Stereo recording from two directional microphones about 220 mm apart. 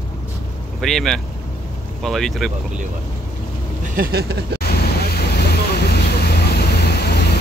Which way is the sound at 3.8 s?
45° right (ahead or behind).